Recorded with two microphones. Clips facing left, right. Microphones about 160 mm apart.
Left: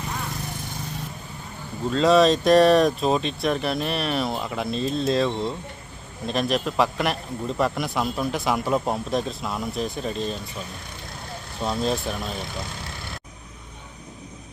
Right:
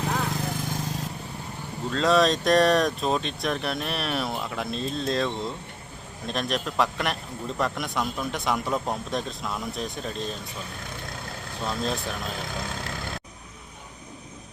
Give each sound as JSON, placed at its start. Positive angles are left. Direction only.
{"t": 0.0, "sound": "vehicle", "side_deg": -90}
{"t": 1.9, "sound": "a man's voice", "side_deg": 0}
{"t": 11.6, "sound": "a man's voice", "side_deg": 0}